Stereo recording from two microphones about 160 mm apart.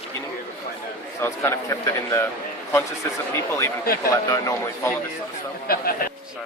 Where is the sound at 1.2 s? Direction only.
15° left (ahead or behind).